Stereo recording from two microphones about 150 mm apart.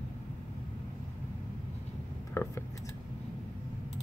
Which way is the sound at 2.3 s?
15° left (ahead or behind).